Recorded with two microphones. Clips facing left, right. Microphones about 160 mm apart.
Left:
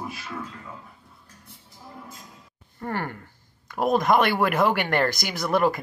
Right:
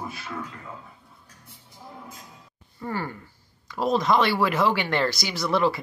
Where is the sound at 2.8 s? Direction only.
60° left (ahead or behind).